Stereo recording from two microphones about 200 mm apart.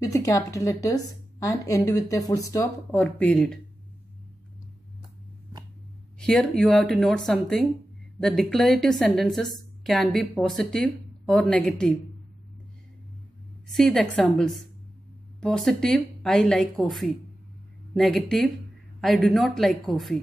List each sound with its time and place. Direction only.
0.0 s a woman's voice: 15° left (ahead or behind)
6.1 s a woman's voice: 5° left (ahead or behind)
13.7 s a woman's voice: centre (ahead or behind)